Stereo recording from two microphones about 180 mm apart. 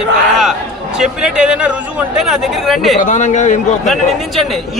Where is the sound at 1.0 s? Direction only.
5° right (ahead or behind).